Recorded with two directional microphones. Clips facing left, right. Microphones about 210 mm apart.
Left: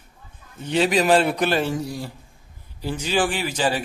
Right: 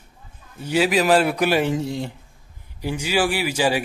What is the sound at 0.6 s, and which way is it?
A man's voice, 5° right (ahead or behind).